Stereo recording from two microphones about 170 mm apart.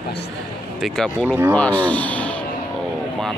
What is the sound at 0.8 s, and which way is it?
Speech, 5° left (ahead or behind).